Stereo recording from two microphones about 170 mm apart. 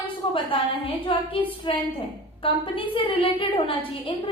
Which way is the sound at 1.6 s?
30° left (ahead or behind).